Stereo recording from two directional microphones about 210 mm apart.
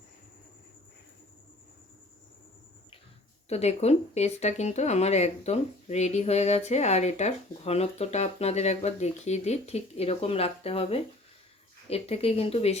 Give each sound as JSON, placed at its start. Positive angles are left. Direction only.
{"t": 3.5, "sound": "speech", "side_deg": 30}